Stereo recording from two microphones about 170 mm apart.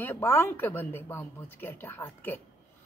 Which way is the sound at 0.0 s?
15° left (ahead or behind).